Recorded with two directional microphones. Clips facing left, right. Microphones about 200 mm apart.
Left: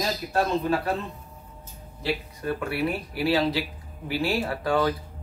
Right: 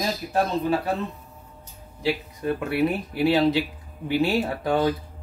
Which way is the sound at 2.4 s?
20° right (ahead or behind).